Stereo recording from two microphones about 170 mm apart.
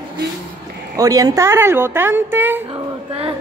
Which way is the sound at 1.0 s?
20° right (ahead or behind).